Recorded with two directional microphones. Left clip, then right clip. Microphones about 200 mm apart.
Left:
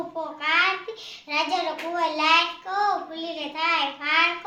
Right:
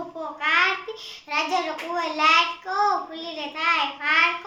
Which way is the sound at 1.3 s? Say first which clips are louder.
Even; 10° right (ahead or behind).